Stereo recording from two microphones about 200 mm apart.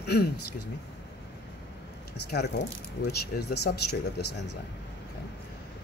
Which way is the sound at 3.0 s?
60° left (ahead or behind).